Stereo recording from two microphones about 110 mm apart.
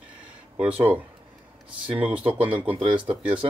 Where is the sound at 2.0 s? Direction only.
10° right (ahead or behind).